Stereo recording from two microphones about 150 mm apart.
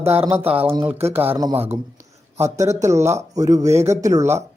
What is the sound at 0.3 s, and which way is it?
Speech, 15° right (ahead or behind).